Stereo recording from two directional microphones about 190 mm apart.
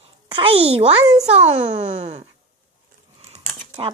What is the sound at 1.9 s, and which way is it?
Speech, 35° right (ahead or behind).